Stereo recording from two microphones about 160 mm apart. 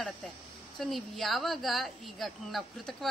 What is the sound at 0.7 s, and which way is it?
A woman's voice, centre (ahead or behind).